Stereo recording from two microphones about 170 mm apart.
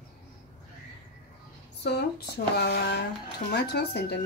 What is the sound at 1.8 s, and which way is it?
Speech, 75° left (ahead or behind).